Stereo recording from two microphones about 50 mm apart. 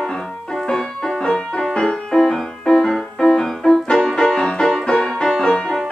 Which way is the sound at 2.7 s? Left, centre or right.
Centre.